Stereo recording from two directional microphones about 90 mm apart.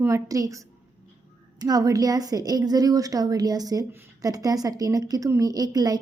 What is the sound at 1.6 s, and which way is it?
A woman's voice, 45° right (ahead or behind).